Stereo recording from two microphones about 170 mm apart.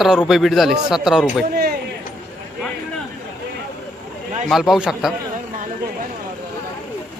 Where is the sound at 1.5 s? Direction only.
60° right (ahead or behind).